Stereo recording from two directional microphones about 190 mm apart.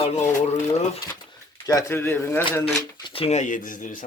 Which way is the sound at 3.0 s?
30° left (ahead or behind).